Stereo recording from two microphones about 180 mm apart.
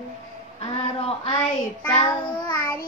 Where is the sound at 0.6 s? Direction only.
30° left (ahead or behind).